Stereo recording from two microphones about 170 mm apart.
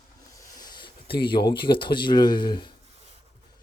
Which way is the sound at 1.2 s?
30° left (ahead or behind).